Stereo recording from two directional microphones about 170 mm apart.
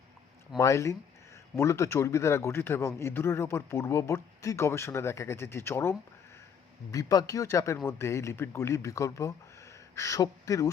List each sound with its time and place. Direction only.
0.6 s a man's voice: 15° left (ahead or behind)